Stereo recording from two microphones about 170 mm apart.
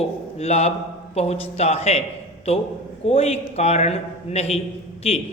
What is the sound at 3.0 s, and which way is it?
A man's voice, 35° left (ahead or behind).